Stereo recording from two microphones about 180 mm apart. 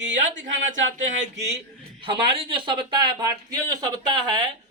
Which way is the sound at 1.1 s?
40° right (ahead or behind).